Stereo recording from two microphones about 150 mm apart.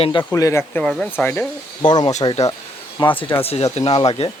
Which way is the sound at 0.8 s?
5° left (ahead or behind).